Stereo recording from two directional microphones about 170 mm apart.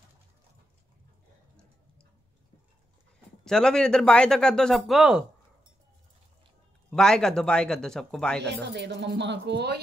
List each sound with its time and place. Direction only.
3.4 s speech: 5° left (ahead or behind)
6.9 s speech: 5° left (ahead or behind)
8.6 s speech: 90° right